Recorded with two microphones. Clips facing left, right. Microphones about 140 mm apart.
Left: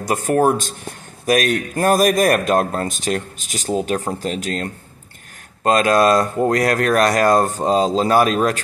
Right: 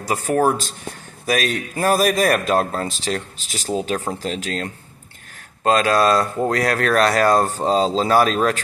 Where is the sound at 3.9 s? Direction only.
10° left (ahead or behind).